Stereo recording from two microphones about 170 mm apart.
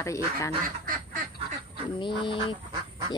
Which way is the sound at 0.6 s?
50° right (ahead or behind).